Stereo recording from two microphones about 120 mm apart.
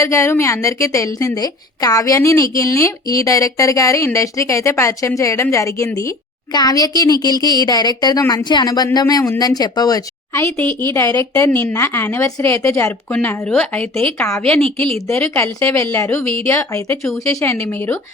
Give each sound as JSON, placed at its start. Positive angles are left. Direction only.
{"t": 0.0, "sound": "a woman's voice", "side_deg": 25}
{"t": 14.2, "sound": "a woman's voice", "side_deg": 25}
{"t": 14.4, "sound": "speech", "side_deg": 10}
{"t": 14.9, "sound": "a woman's voice", "side_deg": 20}